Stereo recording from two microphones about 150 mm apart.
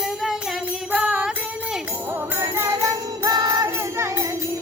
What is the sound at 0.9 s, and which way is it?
Music, 10° right (ahead or behind).